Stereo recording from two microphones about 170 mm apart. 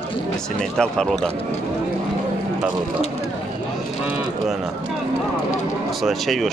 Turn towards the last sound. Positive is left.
turn(degrees=0)  # may be behind; listen again after turning